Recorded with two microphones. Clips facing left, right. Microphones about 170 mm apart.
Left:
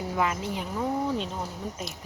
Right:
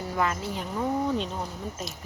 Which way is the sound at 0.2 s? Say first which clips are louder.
Even; 10° left (ahead or behind).